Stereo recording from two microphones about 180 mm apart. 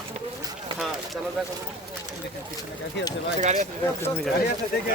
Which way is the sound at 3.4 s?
40° right (ahead or behind).